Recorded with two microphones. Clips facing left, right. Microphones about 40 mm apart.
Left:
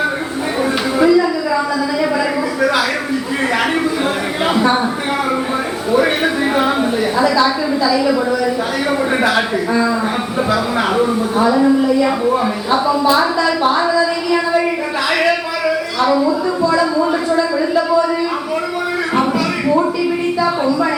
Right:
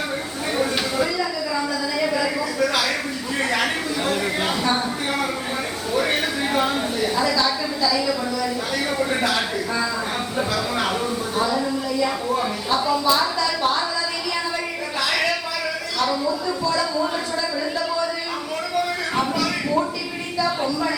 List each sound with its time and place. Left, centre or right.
0.9 s a sound: left
4.4 s speech: left
5.9 s speech: left
9.1 s speech: left
11.3 s a woman's voice: left
16.6 s speech: left
19.1 s a sound: left